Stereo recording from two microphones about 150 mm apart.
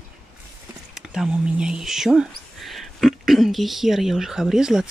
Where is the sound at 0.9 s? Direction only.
5° right (ahead or behind).